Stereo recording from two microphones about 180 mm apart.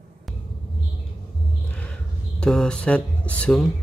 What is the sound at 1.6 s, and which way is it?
Speech, 5° left (ahead or behind).